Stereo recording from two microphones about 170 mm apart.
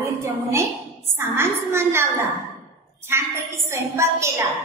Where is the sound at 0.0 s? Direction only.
15° right (ahead or behind).